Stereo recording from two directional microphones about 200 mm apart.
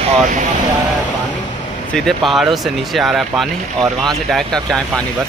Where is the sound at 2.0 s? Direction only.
Centre (ahead or behind).